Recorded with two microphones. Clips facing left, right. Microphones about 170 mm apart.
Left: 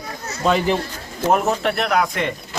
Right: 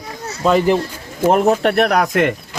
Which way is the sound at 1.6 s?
60° right (ahead or behind).